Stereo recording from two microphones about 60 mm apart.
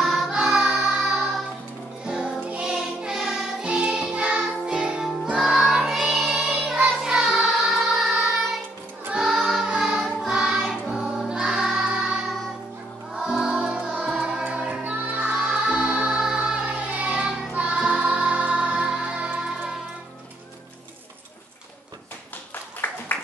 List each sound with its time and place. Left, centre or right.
0.3 s music: centre
9.1 s child singing: centre
9.9 s choir: centre
13.1 s music: centre
15.3 s music: centre
16.6 s child singing: right
17.7 s music: centre
22.5 s music: left